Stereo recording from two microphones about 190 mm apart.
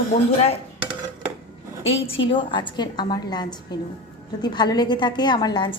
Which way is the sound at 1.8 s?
80° left.